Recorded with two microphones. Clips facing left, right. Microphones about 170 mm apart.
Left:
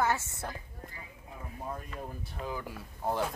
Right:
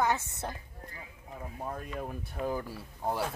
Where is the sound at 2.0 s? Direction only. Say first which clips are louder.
Right 6 dB; 50° right (ahead or behind).